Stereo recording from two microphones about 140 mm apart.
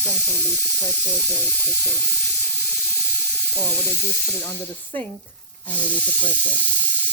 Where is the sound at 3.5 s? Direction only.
15° left (ahead or behind).